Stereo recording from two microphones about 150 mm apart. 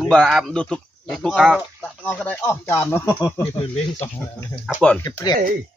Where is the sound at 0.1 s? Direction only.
Centre (ahead or behind).